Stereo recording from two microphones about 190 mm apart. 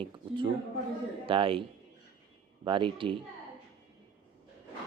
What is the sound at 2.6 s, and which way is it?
Speech, 25° right (ahead or behind).